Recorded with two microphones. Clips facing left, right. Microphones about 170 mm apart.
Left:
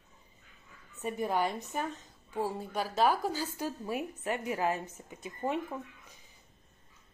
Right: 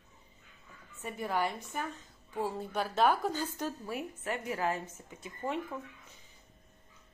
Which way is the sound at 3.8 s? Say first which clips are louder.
Left 3 dB; 20° left (ahead or behind).